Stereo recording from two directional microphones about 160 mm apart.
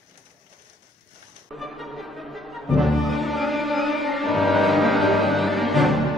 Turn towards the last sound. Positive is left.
turn(degrees=0)  # may be behind; listen again after turning